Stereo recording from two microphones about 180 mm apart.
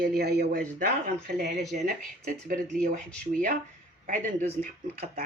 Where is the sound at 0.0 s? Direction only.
60° right (ahead or behind).